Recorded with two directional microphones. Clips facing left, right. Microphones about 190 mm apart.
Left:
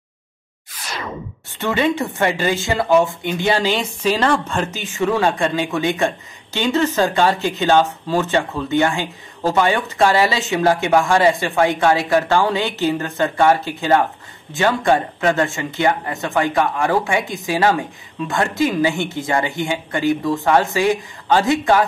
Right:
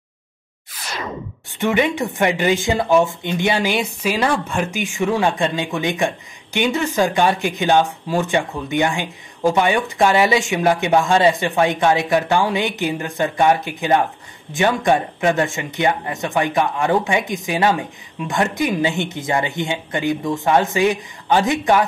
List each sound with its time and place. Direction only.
1.6 s speech: 15° right (ahead or behind)